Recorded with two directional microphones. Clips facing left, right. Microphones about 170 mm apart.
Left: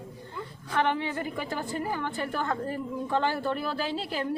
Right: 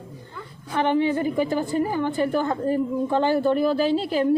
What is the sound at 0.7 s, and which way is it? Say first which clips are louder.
A woman's voice: right 7 dB; 20° right (ahead or behind).